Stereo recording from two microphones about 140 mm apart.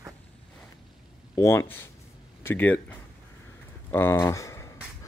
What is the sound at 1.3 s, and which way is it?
Speech, 20° left (ahead or behind).